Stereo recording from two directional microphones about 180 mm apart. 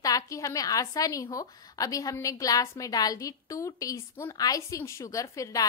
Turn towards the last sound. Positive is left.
turn(degrees=20)  # may be behind; listen again after turning